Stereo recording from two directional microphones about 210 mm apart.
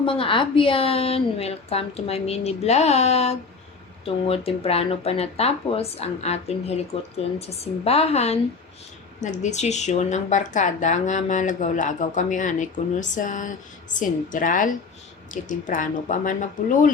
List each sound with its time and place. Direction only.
0.0 s a woman's voice: 25° left (ahead or behind)